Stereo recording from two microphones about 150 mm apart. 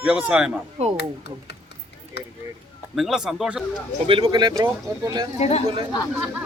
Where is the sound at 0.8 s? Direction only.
45° right (ahead or behind).